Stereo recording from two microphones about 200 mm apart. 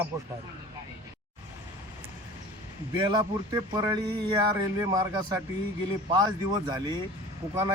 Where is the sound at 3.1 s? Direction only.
20° right (ahead or behind).